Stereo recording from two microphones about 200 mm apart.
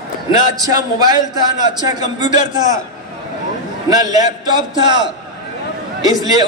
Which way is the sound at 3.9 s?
20° right (ahead or behind).